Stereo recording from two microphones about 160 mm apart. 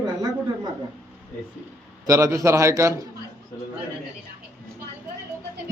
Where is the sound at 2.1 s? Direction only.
20° right (ahead or behind).